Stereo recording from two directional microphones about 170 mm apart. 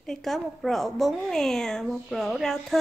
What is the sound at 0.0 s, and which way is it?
A woman's voice, centre (ahead or behind).